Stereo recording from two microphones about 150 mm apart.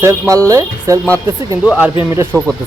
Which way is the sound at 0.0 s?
20° right (ahead or behind).